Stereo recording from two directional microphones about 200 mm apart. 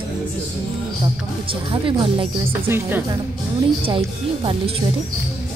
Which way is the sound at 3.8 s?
25° right (ahead or behind).